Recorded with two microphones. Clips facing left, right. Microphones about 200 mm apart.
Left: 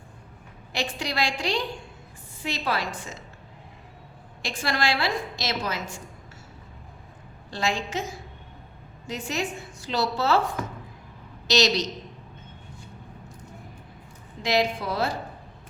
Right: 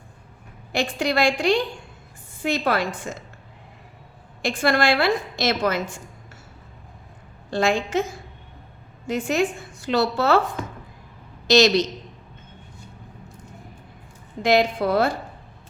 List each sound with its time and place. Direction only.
0.7 s a woman's voice: 50° right (ahead or behind)
4.4 s a woman's voice: 55° right (ahead or behind)
7.5 s a woman's voice: 55° right (ahead or behind)
9.0 s a woman's voice: 55° right (ahead or behind)
11.4 s a woman's voice: 55° right (ahead or behind)
14.4 s a woman's voice: 55° right (ahead or behind)